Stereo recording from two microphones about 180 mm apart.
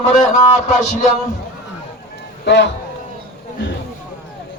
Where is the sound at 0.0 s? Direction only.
45° left (ahead or behind).